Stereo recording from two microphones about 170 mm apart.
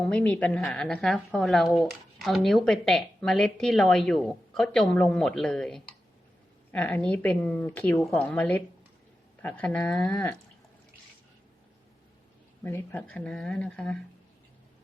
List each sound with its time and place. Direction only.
0.0 s speech: 5° left (ahead or behind)
12.6 s speech: 10° left (ahead or behind)